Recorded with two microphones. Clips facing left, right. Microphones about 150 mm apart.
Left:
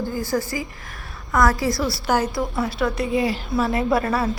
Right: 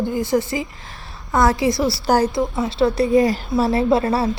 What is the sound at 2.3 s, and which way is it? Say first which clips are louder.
A woman's voice: right 3 dB; 20° right (ahead or behind).